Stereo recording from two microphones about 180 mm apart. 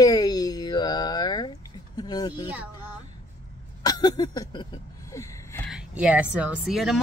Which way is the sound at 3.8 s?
20° left (ahead or behind).